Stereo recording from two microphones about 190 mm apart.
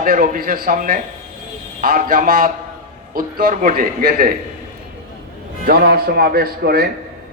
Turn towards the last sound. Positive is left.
turn(degrees=-55)  # may be behind; listen again after turning